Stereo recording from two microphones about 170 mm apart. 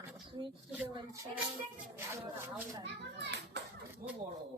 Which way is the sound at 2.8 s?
90° right.